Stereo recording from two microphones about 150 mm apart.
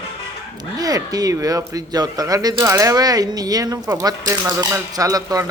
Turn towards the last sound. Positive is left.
turn(degrees=-25)  # may be behind; listen again after turning